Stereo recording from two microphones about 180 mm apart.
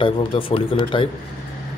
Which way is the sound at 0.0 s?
30° left (ahead or behind).